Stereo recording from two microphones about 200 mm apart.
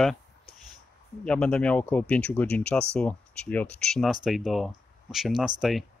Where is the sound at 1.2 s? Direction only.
5° left (ahead or behind).